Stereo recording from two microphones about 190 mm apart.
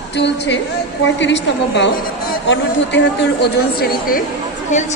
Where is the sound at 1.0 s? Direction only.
70° left (ahead or behind); by 4.2 s 50° left (ahead or behind).